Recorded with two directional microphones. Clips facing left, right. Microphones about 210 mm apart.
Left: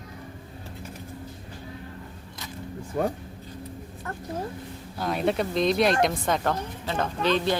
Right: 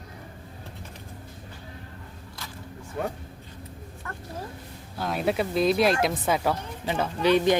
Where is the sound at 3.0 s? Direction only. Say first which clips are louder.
Left 4 dB; 40° left (ahead or behind).